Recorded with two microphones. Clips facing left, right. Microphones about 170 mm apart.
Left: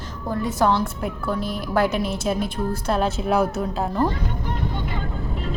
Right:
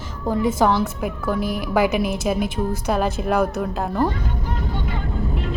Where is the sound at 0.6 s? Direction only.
5° right (ahead or behind).